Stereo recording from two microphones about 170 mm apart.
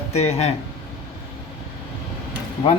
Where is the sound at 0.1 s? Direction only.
40° left (ahead or behind).